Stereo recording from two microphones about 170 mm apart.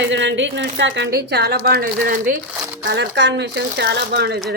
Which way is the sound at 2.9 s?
90° right.